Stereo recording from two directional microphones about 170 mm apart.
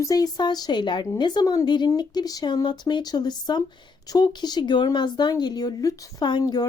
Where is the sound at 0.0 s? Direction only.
20° left (ahead or behind).